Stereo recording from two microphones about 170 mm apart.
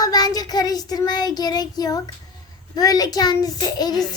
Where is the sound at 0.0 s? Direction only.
20° left (ahead or behind).